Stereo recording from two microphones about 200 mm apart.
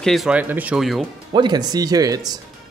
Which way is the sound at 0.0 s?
Centre (ahead or behind).